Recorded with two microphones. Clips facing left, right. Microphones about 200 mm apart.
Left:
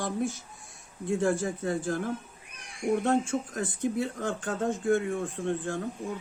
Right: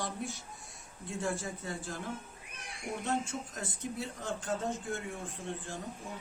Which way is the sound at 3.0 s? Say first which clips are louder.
Left 8 dB; 50° left (ahead or behind).